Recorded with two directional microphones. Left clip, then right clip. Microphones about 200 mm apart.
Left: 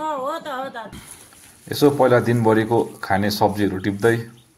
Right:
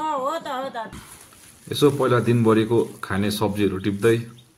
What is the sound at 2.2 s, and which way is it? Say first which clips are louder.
Speech: left 1 dB; 90° left.